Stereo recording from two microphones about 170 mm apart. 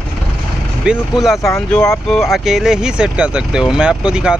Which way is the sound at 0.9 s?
Centre (ahead or behind).